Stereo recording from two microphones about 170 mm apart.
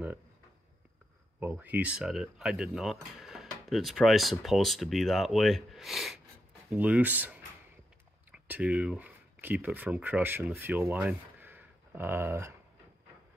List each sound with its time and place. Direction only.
1.4 s speech: 10° right (ahead or behind)